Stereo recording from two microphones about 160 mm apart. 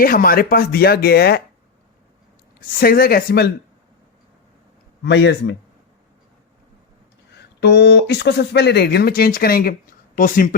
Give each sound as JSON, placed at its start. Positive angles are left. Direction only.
{"t": 0.0, "sound": "speech", "side_deg": 65}
{"t": 2.6, "sound": "speech", "side_deg": 65}
{"t": 5.0, "sound": "speech", "side_deg": 90}
{"t": 7.6, "sound": "speech", "side_deg": 90}